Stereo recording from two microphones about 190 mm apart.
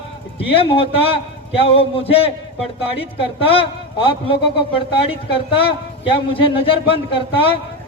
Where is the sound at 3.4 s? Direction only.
30° left (ahead or behind).